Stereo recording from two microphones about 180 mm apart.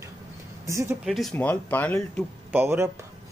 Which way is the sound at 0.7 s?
15° right (ahead or behind).